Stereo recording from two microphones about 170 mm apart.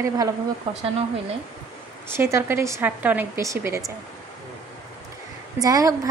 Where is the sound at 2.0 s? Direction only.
15° right (ahead or behind).